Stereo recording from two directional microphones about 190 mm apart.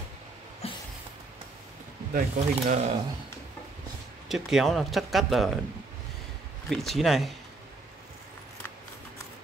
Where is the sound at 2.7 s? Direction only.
35° right (ahead or behind).